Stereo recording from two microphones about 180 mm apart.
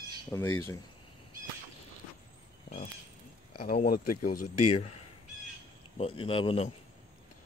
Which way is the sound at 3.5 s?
55° left (ahead or behind).